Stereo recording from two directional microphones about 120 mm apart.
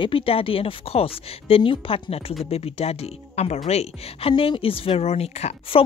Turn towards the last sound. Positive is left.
turn(degrees=60)  # may be behind; listen again after turning